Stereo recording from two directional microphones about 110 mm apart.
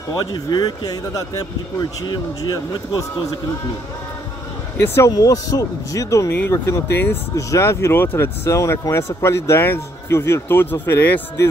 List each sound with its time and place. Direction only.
0.3 s speech: 40° left (ahead or behind)
4.7 s speech: 25° left (ahead or behind)